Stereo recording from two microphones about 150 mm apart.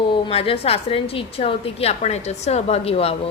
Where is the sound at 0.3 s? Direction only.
40° left (ahead or behind).